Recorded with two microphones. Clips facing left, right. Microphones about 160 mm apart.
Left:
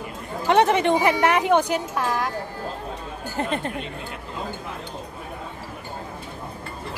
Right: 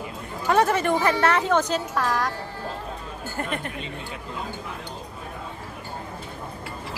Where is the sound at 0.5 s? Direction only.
20° left (ahead or behind).